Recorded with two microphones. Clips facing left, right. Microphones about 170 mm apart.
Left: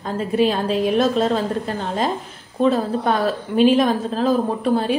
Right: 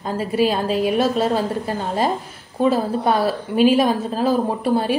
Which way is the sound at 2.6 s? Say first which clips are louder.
Even; 5° right (ahead or behind).